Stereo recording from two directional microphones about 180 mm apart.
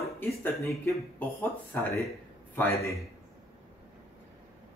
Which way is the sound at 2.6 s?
10° left (ahead or behind).